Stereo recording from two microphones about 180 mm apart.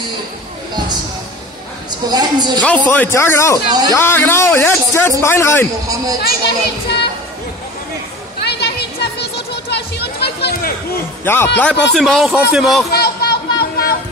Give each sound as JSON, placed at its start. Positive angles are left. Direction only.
{"t": 1.9, "sound": "a woman's voice", "side_deg": -25}
{"t": 2.9, "sound": "a man's voice", "side_deg": 15}
{"t": 3.6, "sound": "a woman's voice", "side_deg": -20}
{"t": 3.9, "sound": "a man's voice", "side_deg": 15}
{"t": 6.4, "sound": "speech", "side_deg": 70}
{"t": 8.4, "sound": "a sound", "side_deg": 65}
{"t": 11.2, "sound": "a man's voice", "side_deg": 15}
{"t": 12.9, "sound": "a sound", "side_deg": 60}